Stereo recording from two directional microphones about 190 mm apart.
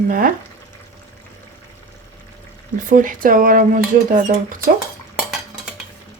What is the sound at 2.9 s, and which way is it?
Speech, 45° right (ahead or behind).